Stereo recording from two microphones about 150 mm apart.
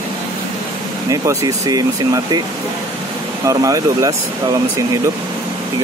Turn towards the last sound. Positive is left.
turn(degrees=-25)  # may be behind; listen again after turning